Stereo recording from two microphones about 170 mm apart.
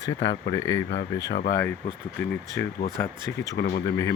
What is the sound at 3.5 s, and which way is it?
Speech, 65° left (ahead or behind).